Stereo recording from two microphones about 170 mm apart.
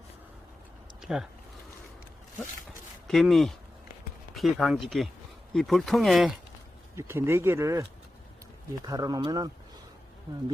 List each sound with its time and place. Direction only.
1.0 s speech: 5° right (ahead or behind)
3.1 s speech: centre (ahead or behind)
6.9 s speech: 15° right (ahead or behind)